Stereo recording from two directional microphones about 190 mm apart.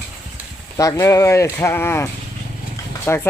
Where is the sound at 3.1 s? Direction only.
10° left (ahead or behind).